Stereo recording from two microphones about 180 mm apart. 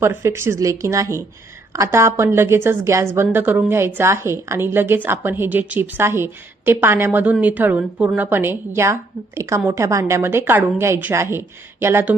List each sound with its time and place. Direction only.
0.0 s a woman's voice: 15° right (ahead or behind)